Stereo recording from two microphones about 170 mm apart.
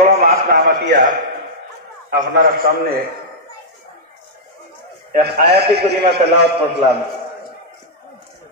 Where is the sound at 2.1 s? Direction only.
60° right (ahead or behind).